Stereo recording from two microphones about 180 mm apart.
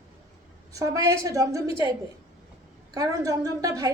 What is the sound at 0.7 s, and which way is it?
A woman's voice, 20° right (ahead or behind).